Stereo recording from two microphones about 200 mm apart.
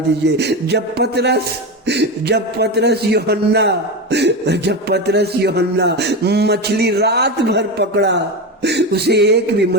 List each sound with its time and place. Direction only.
0.3 s a man's voice: 55° right (ahead or behind)